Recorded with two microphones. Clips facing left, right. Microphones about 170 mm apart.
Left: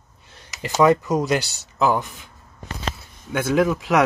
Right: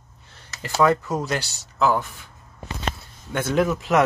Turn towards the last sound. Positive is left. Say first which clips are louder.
# left 2 dB
turn(degrees=0)  # may be behind; listen again after turning